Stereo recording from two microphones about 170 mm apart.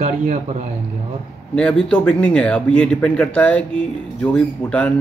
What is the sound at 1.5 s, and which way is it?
A man's voice, 5° left (ahead or behind).